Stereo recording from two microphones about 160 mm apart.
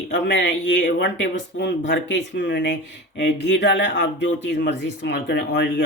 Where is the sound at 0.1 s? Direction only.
90° left.